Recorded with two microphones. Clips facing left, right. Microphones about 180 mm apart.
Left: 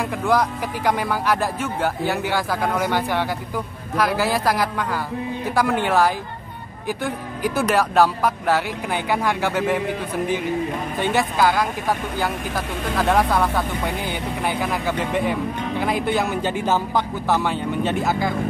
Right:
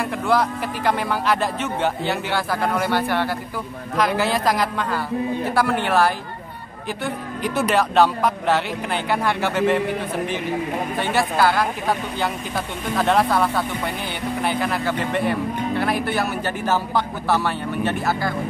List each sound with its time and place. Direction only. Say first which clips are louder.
0.0 s speech: even; 10° left (ahead or behind)
11.0 s speech: left 1 dB; 15° left (ahead or behind)